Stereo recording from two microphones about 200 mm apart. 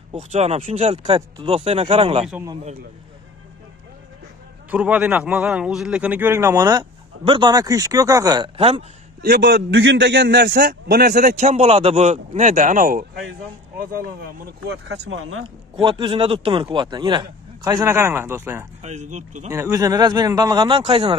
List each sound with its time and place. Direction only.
0.1 s a man's voice: 35° right (ahead or behind)
4.6 s a man's voice: 5° right (ahead or behind)
8.5 s speech: 30° right (ahead or behind)
9.2 s a man's voice: 55° right (ahead or behind); by 15.4 s 90° right
15.7 s a man's voice: 25° right (ahead or behind)
18.8 s a man's voice: 35° right (ahead or behind)
19.5 s speech: 15° right (ahead or behind)